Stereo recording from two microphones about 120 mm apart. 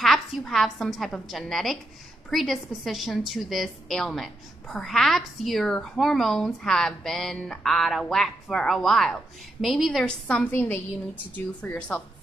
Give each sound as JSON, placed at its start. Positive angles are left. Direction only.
{"t": 0.0, "sound": "a woman's voice", "side_deg": 0}
{"t": 10.0, "sound": "a woman's voice", "side_deg": 10}